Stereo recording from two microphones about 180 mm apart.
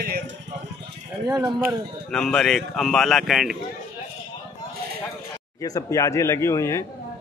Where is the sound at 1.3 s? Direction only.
15° right (ahead or behind).